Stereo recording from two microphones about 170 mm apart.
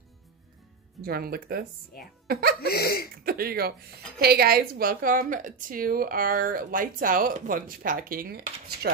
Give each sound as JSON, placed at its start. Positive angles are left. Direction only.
{"t": 1.0, "sound": "a woman's voice", "side_deg": -65}
{"t": 2.6, "sound": "speech", "side_deg": 65}
{"t": 3.3, "sound": "a woman's voice", "side_deg": -60}